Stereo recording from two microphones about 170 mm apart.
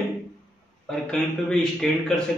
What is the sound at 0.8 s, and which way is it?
Mantra, centre (ahead or behind).